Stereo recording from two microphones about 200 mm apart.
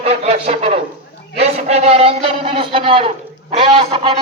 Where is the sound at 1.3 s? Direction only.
30° right (ahead or behind).